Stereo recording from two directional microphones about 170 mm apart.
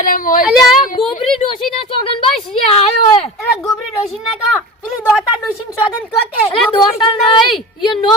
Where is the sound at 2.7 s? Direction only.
35° left (ahead or behind).